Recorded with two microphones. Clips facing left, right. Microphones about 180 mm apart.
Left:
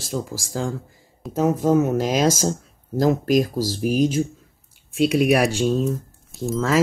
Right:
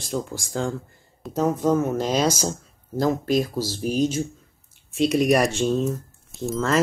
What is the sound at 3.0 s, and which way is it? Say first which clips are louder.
Speech: left 3 dB; 15° left (ahead or behind).